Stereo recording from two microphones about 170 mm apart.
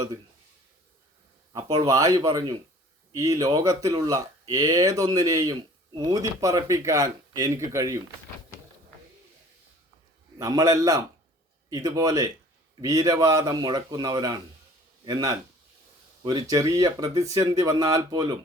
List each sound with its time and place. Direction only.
1.5 s speech: 20° right (ahead or behind)
10.3 s speech: 20° right (ahead or behind)